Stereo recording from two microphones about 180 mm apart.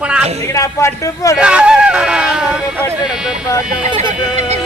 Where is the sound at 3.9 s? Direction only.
25° right (ahead or behind).